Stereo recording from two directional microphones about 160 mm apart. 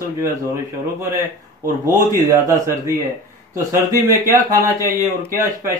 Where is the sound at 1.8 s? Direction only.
20° right (ahead or behind).